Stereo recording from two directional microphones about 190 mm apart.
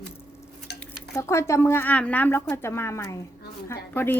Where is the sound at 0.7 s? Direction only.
60° left (ahead or behind).